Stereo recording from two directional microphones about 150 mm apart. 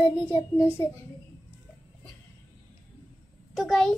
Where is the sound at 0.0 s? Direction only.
35° left (ahead or behind).